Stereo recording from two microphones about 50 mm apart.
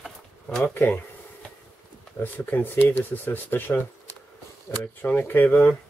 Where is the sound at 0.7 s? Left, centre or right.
Left.